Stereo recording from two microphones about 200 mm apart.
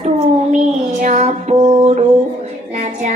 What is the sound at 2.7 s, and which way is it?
Music, 35° right (ahead or behind).